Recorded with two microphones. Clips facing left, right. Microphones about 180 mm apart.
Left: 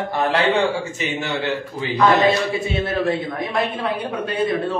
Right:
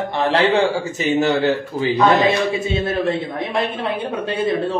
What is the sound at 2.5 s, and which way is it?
A man's voice, 25° right (ahead or behind).